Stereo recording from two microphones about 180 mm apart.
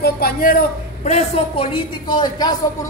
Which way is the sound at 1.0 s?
35° left (ahead or behind).